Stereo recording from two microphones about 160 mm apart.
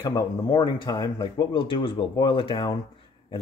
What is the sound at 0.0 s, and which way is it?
Speech, 25° left (ahead or behind).